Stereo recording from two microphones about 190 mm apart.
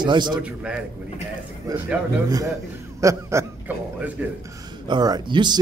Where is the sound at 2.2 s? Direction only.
20° right (ahead or behind).